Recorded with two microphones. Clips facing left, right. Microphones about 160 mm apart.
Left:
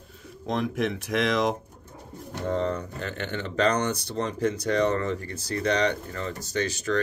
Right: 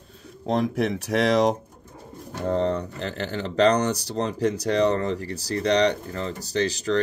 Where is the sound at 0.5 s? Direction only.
35° right (ahead or behind).